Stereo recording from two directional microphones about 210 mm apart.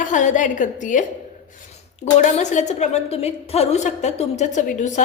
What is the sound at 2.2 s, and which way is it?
A woman's voice, 35° left (ahead or behind).